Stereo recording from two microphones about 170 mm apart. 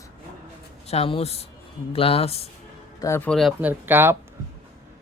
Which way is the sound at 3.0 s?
15° left (ahead or behind).